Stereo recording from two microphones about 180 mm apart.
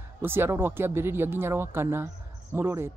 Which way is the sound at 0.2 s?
10° right (ahead or behind).